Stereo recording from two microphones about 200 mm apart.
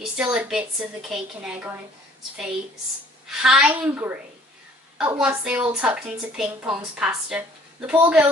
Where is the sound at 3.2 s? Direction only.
5° right (ahead or behind).